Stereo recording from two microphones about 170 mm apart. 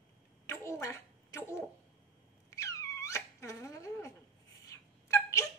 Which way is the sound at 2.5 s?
20° left (ahead or behind).